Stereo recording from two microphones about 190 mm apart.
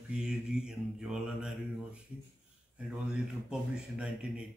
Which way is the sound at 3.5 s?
5° right (ahead or behind).